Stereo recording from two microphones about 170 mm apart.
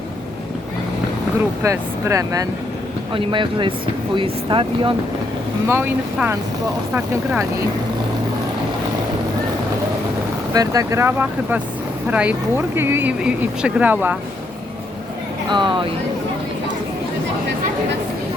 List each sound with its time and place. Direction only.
1.6 s speech: 15° right (ahead or behind)
5.6 s speech: 15° right (ahead or behind)
10.5 s speech: 20° right (ahead or behind)
15.4 s speech: 30° right (ahead or behind)